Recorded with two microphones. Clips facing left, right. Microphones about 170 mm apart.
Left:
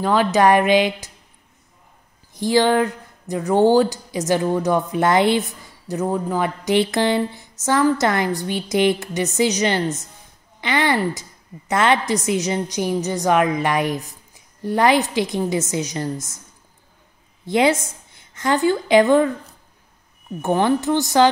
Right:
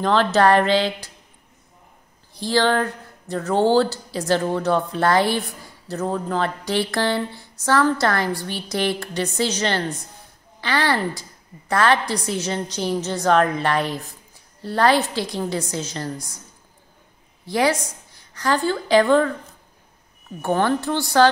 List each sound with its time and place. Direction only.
0.0 s speech: 10° left (ahead or behind)
2.3 s speech: 15° left (ahead or behind)
17.5 s a woman's voice: 25° left (ahead or behind)
20.4 s speech: 15° left (ahead or behind)